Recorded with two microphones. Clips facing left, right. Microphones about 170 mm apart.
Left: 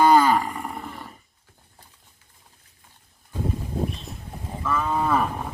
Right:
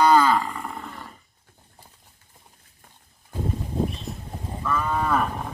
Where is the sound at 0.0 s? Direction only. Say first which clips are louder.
Left 1 dB; 15° left (ahead or behind).